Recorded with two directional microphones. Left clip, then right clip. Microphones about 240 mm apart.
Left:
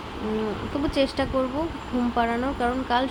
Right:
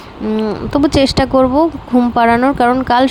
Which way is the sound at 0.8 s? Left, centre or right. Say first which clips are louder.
Right 11 dB; right.